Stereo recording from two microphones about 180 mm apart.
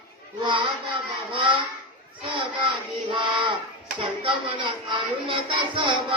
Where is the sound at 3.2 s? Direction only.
25° right (ahead or behind).